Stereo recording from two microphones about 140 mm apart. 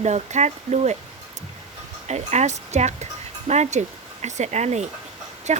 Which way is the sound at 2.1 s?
55° right (ahead or behind).